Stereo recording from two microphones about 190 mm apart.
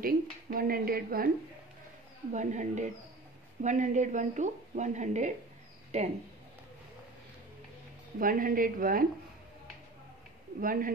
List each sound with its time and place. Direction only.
0.0 s speech: 50° right (ahead or behind)
2.3 s a woman's voice: 40° right (ahead or behind)
8.2 s speech: 45° right (ahead or behind)
10.6 s speech: 45° right (ahead or behind)